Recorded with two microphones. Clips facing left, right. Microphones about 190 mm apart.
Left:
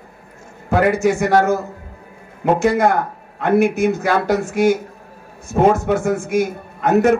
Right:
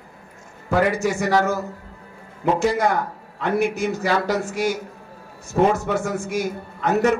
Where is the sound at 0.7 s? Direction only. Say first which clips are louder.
Left 4 dB; 55° left (ahead or behind).